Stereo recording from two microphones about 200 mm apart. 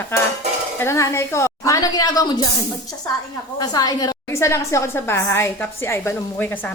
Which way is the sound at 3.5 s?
20° left (ahead or behind).